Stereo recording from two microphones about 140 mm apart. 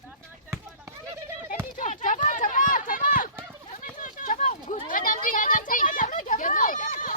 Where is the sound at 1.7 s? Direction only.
65° left (ahead or behind).